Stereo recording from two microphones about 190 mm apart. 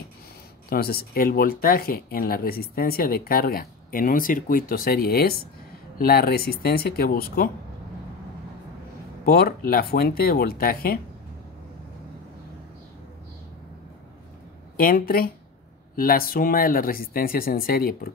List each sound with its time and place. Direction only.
0.7 s speech: 55° left (ahead or behind)
9.2 s speech: 50° left (ahead or behind)
14.8 s speech: 50° left (ahead or behind)